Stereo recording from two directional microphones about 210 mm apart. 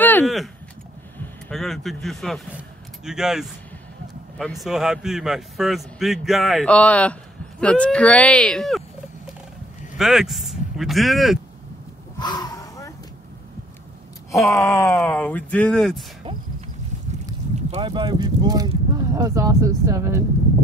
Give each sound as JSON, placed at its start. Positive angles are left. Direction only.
{"t": 0.0, "sound": "a sound", "side_deg": 10}
{"t": 1.1, "sound": "a man's voice", "side_deg": 5}
{"t": 12.2, "sound": "gasp", "side_deg": 20}
{"t": 14.3, "sound": "speech", "side_deg": 15}
{"t": 17.6, "sound": "speech", "side_deg": -30}